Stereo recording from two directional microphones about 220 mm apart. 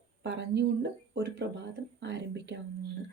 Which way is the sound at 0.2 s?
50° right (ahead or behind).